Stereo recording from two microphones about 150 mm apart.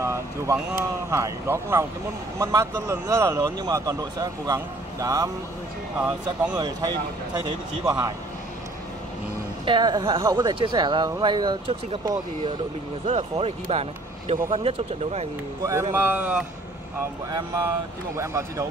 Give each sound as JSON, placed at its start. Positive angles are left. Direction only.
{"t": 0.0, "sound": "a man's voice", "side_deg": -15}
{"t": 5.9, "sound": "a man's voice", "side_deg": -10}
{"t": 6.5, "sound": "a man's voice", "side_deg": -25}
{"t": 9.7, "sound": "a man's voice", "side_deg": -30}
{"t": 13.0, "sound": "speech", "side_deg": -45}
{"t": 15.6, "sound": "a man's voice", "side_deg": -20}
{"t": 17.3, "sound": "a man's voice", "side_deg": -25}